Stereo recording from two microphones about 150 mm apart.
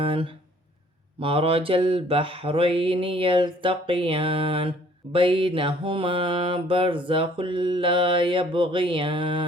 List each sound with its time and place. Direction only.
0.0 s speech: 35° right (ahead or behind)
1.2 s mantra: 35° right (ahead or behind)